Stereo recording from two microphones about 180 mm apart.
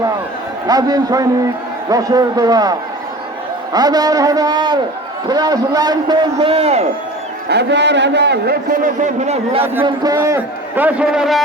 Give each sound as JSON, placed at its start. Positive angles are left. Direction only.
{"t": 0.7, "sound": "a man's voice", "side_deg": -20}
{"t": 7.4, "sound": "a man's voice", "side_deg": -70}
{"t": 8.8, "sound": "a man's voice", "side_deg": -40}
{"t": 9.8, "sound": "a man's voice", "side_deg": -20}